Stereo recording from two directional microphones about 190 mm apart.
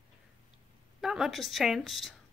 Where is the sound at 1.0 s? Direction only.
Centre (ahead or behind).